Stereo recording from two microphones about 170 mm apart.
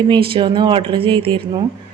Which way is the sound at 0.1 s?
30° right (ahead or behind).